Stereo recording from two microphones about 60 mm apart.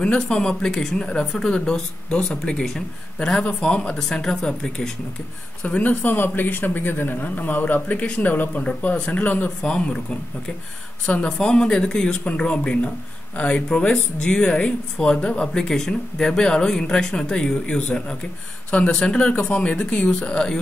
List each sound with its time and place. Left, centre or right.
0.0 s speech: centre
5.6 s a man's voice: left
9.6 s speech: centre
11.2 s speech: centre